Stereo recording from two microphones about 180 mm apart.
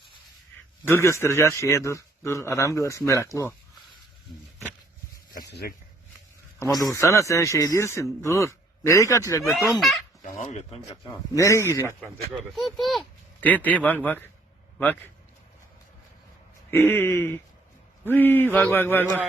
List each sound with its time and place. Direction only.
0.9 s a man's voice: 15° left (ahead or behind)
5.3 s a sound: 60° left (ahead or behind)
6.6 s a man's voice: 20° left (ahead or behind)
9.4 s speech: centre (ahead or behind)
10.4 s speech: 40° left (ahead or behind)
11.3 s a man's voice: 15° left (ahead or behind)
12.3 s a man's voice: centre (ahead or behind)
16.7 s a man's voice: 15° left (ahead or behind)